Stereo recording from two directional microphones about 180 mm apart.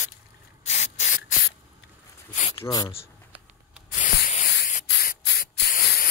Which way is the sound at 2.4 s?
30° left (ahead or behind).